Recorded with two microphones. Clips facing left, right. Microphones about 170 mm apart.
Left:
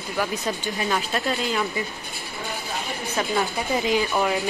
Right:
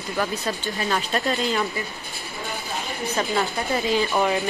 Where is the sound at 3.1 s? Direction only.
Centre (ahead or behind).